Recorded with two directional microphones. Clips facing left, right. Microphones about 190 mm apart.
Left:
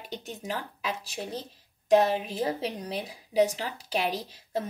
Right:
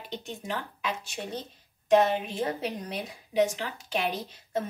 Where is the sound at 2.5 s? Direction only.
35° left (ahead or behind).